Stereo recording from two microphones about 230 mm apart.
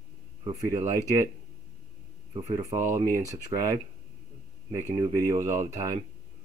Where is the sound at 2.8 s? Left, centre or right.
Centre.